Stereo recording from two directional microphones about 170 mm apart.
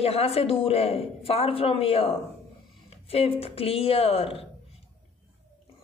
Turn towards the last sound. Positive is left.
turn(degrees=35)  # may be behind; listen again after turning